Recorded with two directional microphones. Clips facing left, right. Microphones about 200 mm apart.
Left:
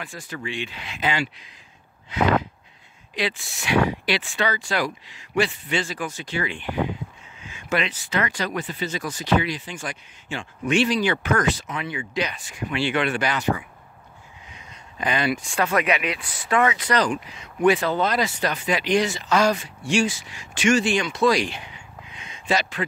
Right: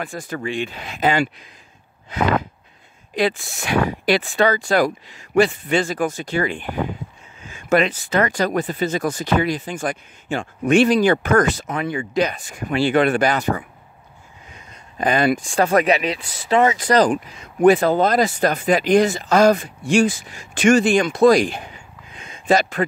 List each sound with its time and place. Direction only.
0.0 s speech: 50° right (ahead or behind)
3.2 s speech: 50° right (ahead or behind)
14.5 s a sound: 45° right (ahead or behind)
15.5 s speech: 35° right (ahead or behind)
16.7 s speech: 45° right (ahead or behind)